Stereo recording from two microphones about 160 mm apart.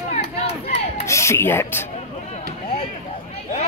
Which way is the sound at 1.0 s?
15° left (ahead or behind).